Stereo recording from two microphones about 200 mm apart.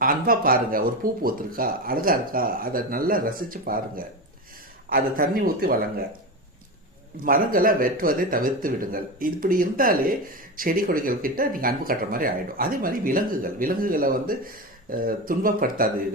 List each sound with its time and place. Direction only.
0.0 s speech: 45° right (ahead or behind)
7.3 s speech: 45° right (ahead or behind)